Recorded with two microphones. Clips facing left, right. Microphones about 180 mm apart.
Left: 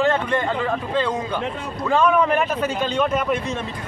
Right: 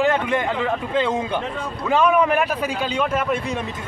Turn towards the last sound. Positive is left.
turn(degrees=-5)  # may be behind; listen again after turning